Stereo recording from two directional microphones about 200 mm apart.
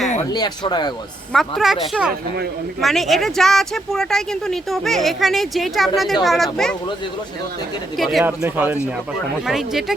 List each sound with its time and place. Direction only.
0.3 s speech: 20° left (ahead or behind)
1.3 s speech: centre (ahead or behind)
7.9 s speech: centre (ahead or behind)